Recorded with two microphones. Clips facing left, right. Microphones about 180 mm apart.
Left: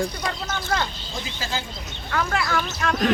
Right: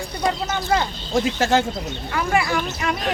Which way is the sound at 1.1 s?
80° right.